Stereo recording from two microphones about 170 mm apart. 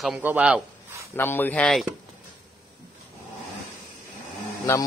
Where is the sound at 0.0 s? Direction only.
Centre (ahead or behind).